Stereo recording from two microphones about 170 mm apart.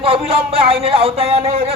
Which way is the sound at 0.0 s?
35° right (ahead or behind).